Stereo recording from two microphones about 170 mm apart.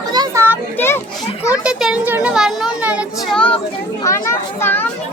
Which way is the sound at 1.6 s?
5° right (ahead or behind).